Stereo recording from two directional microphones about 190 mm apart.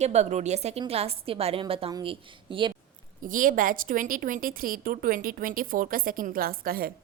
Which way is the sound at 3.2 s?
45° right (ahead or behind).